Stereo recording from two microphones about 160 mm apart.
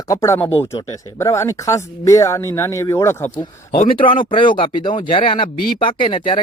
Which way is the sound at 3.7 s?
35° left (ahead or behind).